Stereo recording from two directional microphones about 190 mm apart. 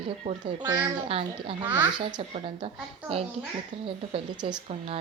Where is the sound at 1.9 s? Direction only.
25° right (ahead or behind).